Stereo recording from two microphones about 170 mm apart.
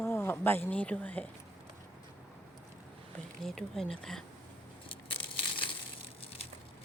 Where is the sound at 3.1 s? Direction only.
Centre (ahead or behind).